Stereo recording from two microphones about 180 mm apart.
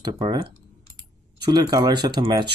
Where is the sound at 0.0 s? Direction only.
25° right (ahead or behind).